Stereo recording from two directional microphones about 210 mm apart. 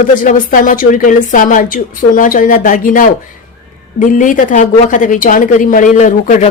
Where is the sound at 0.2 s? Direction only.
40° left (ahead or behind).